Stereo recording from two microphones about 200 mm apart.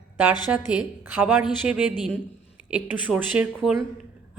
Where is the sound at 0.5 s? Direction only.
5° right (ahead or behind).